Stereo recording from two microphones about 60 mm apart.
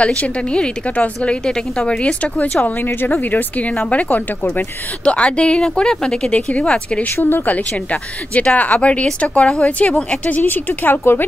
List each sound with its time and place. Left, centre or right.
0.0 s a woman's voice: centre
2.6 s a woman's voice: left
7.2 s a woman's voice: left